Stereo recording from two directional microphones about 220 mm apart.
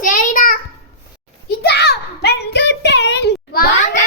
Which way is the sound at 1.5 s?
50° left (ahead or behind).